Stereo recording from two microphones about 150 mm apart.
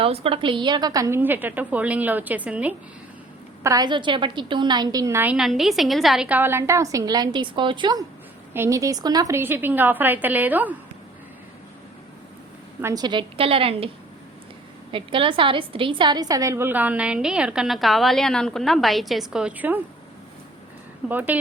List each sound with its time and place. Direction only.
0.0 s a woman's voice: 40° right (ahead or behind); by 2.7 s 10° right (ahead or behind)
3.6 s a woman's voice: 25° right (ahead or behind)
5.4 s a woman's voice: centre (ahead or behind); by 8.0 s 30° right (ahead or behind)
8.5 s a woman's voice: 20° right (ahead or behind)
12.8 s a woman's voice: 25° right (ahead or behind)
14.9 s a woman's voice: 35° right (ahead or behind); by 19.8 s 10° right (ahead or behind)
21.1 s a woman's voice: 10° right (ahead or behind)